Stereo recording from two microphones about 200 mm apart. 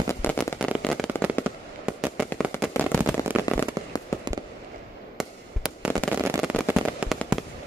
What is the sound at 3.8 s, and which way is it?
Fireworks, 15° right (ahead or behind).